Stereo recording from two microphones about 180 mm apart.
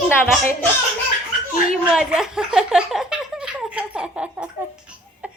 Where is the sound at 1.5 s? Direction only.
50° left (ahead or behind).